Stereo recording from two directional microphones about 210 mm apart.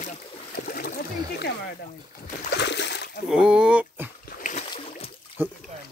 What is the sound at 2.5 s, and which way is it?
Splash, 55° left (ahead or behind).